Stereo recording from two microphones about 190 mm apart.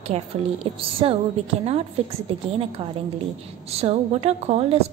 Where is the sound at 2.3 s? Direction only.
35° right (ahead or behind).